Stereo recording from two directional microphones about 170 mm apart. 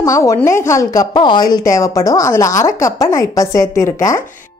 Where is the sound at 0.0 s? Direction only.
20° left (ahead or behind).